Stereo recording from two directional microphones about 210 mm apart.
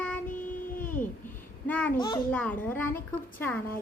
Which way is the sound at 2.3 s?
5° left (ahead or behind).